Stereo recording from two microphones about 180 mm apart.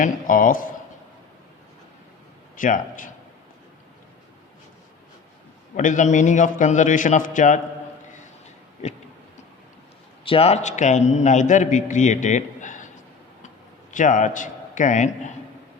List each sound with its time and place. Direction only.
0.0 s a man's voice: 50° left (ahead or behind)
2.6 s a man's voice: 50° left (ahead or behind)
5.7 s a man's voice: 45° left (ahead or behind)
8.8 s a man's voice: 40° left (ahead or behind)
10.2 s a man's voice: 30° left (ahead or behind)
13.9 s a man's voice: 45° left (ahead or behind)